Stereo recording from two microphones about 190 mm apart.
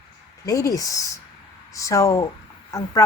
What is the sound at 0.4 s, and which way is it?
Speech, 15° left (ahead or behind).